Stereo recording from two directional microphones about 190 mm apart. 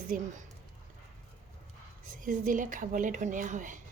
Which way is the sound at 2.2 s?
45° right (ahead or behind).